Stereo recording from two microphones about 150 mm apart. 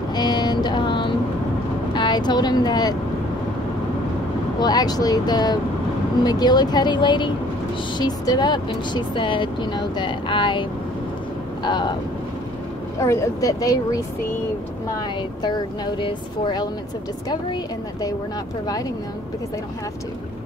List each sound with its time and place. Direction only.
0.1 s vehicle: 30° left (ahead or behind)
2.0 s speech: 30° left (ahead or behind)
4.6 s speech: 25° left (ahead or behind)
13.0 s speech: 20° left (ahead or behind)
15.4 s speech: 30° left (ahead or behind)